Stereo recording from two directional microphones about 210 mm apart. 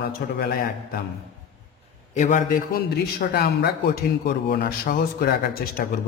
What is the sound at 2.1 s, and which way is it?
A man's voice, 40° left (ahead or behind).